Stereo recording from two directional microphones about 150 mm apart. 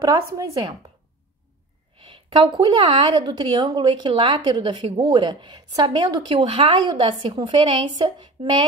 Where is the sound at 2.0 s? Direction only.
35° right (ahead or behind).